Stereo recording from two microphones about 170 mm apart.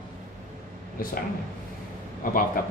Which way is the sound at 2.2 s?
55° left (ahead or behind).